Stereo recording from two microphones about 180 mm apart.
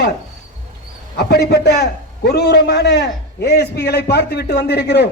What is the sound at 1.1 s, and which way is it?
A man's voice, 65° left (ahead or behind).